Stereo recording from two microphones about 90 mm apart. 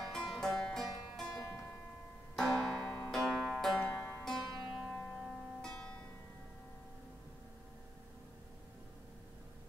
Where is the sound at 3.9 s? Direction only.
25° left (ahead or behind).